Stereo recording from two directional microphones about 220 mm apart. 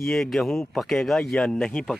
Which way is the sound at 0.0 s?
Centre (ahead or behind).